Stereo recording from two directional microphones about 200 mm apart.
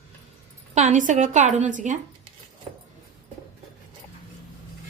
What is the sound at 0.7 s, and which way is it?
A woman's voice, 35° right (ahead or behind).